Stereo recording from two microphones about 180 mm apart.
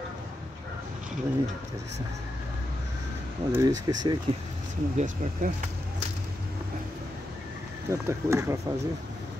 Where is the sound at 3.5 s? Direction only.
20° right (ahead or behind).